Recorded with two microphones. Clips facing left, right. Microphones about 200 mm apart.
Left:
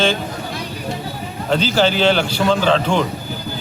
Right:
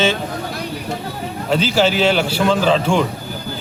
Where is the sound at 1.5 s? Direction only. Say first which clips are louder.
Even; 5° right (ahead or behind).